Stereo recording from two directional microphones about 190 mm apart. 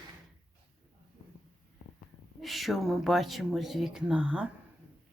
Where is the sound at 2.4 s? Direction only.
Centre (ahead or behind).